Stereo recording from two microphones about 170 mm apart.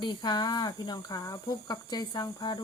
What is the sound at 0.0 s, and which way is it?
Speech, 25° left (ahead or behind).